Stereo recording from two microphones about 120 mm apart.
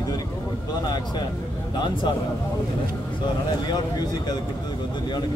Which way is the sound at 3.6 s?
35° left (ahead or behind).